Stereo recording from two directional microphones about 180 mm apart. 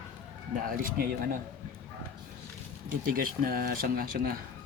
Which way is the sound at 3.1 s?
55° right (ahead or behind).